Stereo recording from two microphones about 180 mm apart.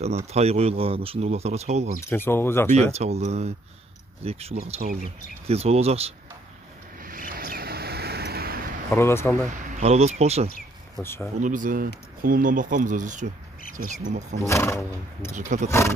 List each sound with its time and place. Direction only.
0.0 s speech: 35° right (ahead or behind)
2.0 s speech: 10° left (ahead or behind)
2.7 s speech: 35° right (ahead or behind)
7.0 s vehicle: 50° right (ahead or behind)
8.9 s speech: 15° left (ahead or behind)
9.7 s speech: 40° right (ahead or behind)
11.0 s speech: 15° left (ahead or behind)
11.3 s speech: 45° right (ahead or behind)
14.5 s speech: 15° left (ahead or behind)
15.3 s speech: 40° right (ahead or behind)